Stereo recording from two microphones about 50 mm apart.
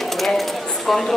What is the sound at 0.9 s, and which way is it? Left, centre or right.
Speech, centre.